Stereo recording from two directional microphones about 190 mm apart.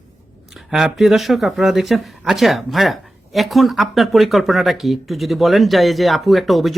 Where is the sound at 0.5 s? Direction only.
Centre (ahead or behind).